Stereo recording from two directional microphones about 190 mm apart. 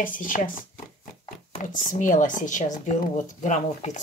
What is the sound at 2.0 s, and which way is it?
Speech, 45° left (ahead or behind).